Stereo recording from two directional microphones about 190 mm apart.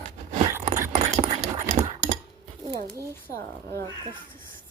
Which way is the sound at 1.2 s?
45° right (ahead or behind).